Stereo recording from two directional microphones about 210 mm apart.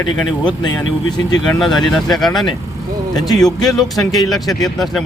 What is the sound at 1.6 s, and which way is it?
Speech, centre (ahead or behind).